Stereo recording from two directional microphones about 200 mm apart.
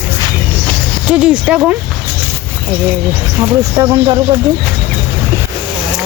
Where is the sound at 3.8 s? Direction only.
20° right (ahead or behind).